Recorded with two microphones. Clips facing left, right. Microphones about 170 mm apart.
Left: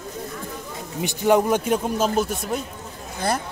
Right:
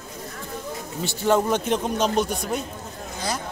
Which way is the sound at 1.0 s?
15° left (ahead or behind).